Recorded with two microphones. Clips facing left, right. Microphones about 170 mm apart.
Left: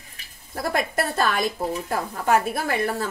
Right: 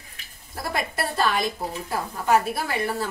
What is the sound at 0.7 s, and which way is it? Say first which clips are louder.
Speech: left 3 dB; 45° left (ahead or behind).